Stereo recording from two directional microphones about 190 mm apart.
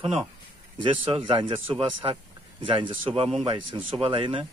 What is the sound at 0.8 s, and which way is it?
Speech, 25° right (ahead or behind).